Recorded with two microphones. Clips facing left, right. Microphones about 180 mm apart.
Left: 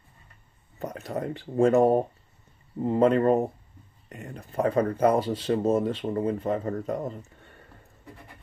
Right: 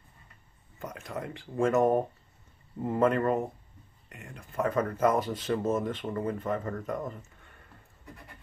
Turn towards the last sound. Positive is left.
turn(degrees=30)  # may be behind; listen again after turning